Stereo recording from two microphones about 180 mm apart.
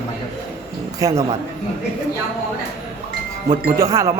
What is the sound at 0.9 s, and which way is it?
Speech, 20° right (ahead or behind).